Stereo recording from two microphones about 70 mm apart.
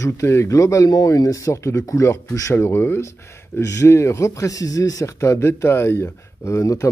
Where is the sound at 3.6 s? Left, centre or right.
Left.